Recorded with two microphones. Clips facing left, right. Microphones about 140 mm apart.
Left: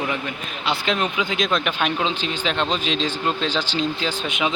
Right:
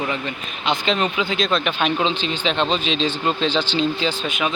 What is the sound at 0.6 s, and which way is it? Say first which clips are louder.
Speech: right 2 dB; 10° left (ahead or behind).